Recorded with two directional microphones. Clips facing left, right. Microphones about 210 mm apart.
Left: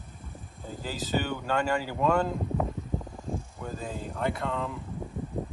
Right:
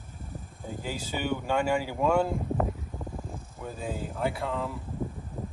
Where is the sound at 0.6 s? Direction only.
10° right (ahead or behind).